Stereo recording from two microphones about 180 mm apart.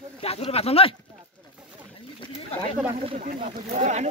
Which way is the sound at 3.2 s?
40° right (ahead or behind).